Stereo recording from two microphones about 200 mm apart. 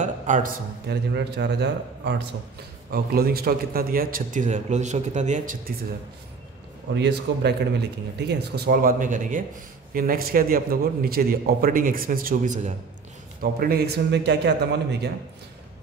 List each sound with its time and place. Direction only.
0.0 s a man's voice: 40° right (ahead or behind)
7.0 s a man's voice: 55° right (ahead or behind)